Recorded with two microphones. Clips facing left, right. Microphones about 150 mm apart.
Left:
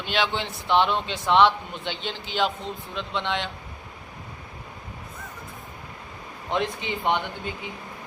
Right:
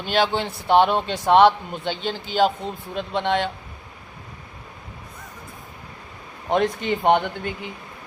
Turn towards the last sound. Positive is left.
turn(degrees=-50)  # may be behind; listen again after turning